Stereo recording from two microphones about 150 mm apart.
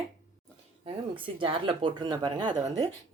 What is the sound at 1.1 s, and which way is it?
A woman's voice, 35° right (ahead or behind).